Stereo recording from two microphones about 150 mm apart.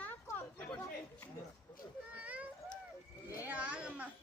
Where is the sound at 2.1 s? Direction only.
10° right (ahead or behind).